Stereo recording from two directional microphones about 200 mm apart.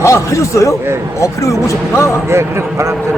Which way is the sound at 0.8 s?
10° right (ahead or behind).